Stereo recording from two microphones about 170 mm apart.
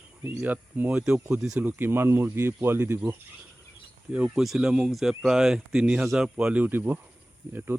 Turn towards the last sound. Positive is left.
turn(degrees=-10)  # may be behind; listen again after turning